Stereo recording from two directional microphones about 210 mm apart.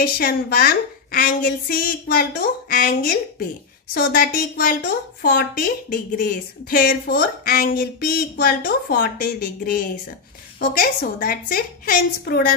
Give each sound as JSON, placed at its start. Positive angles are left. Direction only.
{"t": 0.0, "sound": "a woman's voice", "side_deg": 45}
{"t": 10.6, "sound": "a woman's voice", "side_deg": 45}